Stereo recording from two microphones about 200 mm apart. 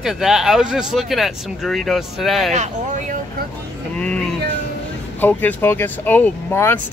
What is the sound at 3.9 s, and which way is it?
Speech, 5° left (ahead or behind).